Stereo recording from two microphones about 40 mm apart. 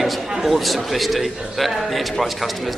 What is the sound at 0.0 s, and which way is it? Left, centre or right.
A man's voice, centre.